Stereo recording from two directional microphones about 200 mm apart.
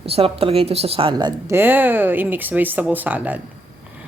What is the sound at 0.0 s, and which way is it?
A woman's voice, 30° right (ahead or behind).